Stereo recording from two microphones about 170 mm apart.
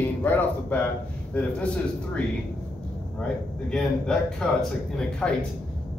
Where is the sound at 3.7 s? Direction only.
5° left (ahead or behind).